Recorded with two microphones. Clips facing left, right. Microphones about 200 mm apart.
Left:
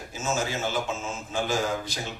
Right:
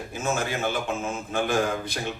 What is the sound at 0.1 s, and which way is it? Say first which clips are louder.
A man's voice: right 1 dB; 55° right (ahead or behind).